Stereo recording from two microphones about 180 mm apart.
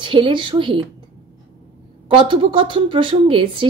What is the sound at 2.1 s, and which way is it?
Speech, 30° right (ahead or behind).